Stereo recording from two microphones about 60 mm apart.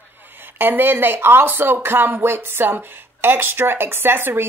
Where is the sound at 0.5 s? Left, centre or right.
Right.